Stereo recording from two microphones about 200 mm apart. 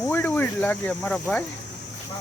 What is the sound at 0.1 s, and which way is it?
Speech, 10° left (ahead or behind).